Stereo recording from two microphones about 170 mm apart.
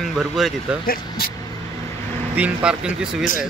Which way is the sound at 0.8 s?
60° left (ahead or behind).